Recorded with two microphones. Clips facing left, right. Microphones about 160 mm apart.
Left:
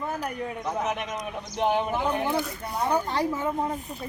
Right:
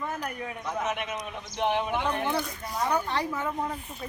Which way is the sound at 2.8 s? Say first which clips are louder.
Left 2 dB; 25° left (ahead or behind).